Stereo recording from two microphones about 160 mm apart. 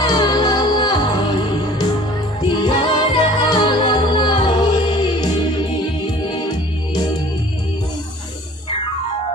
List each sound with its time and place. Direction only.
0.0 s music: 25° left (ahead or behind)
2.4 s music: 30° left (ahead or behind)